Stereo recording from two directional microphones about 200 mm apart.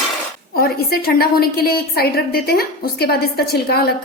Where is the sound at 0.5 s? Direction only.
50° left (ahead or behind).